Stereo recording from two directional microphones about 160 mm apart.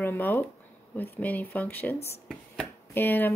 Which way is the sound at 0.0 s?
15° left (ahead or behind).